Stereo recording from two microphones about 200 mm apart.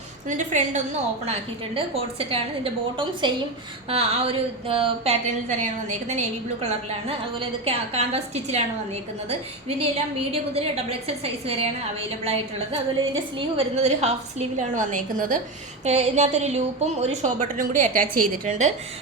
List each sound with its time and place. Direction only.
0.3 s a woman's voice: 40° right (ahead or behind)
9.6 s a woman's voice: 30° right (ahead or behind)